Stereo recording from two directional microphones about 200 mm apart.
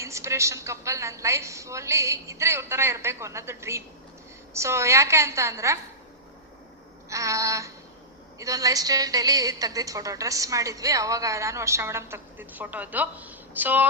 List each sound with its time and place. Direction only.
0.0 s a woman's voice: 15° right (ahead or behind)
7.1 s a woman's voice: 15° right (ahead or behind)